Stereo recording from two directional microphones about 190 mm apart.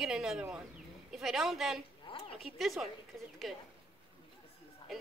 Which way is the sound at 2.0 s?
30° left (ahead or behind).